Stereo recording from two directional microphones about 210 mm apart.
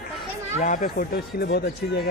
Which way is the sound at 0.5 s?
35° left (ahead or behind).